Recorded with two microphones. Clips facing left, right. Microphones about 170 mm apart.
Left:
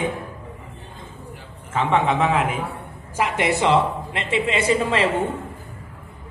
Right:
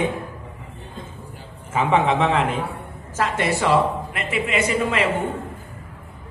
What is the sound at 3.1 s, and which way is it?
A woman's voice, 15° left (ahead or behind).